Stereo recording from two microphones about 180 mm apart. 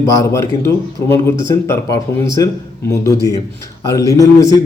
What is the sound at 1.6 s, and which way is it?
A man's voice, 15° left (ahead or behind).